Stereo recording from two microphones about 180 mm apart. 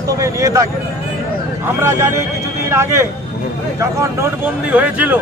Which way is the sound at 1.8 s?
15° right (ahead or behind).